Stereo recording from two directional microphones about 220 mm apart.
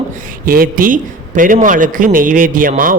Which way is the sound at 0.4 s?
40° right (ahead or behind).